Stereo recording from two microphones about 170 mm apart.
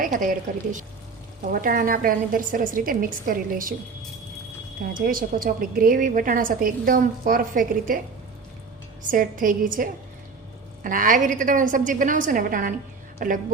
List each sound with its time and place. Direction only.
0.0 s a woman's voice: 50° right (ahead or behind)
4.8 s a woman's voice: 55° right (ahead or behind)
9.0 s a woman's voice: 50° right (ahead or behind)